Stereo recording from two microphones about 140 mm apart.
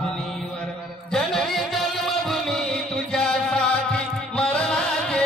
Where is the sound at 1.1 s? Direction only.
Centre (ahead or behind).